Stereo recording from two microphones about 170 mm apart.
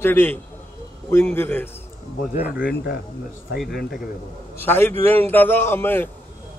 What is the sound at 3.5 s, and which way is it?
Speech, centre (ahead or behind).